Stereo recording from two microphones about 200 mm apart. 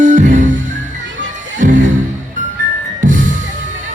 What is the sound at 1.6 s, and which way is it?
Music, 40° right (ahead or behind).